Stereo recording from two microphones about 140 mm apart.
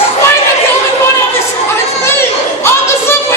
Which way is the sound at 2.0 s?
15° left (ahead or behind).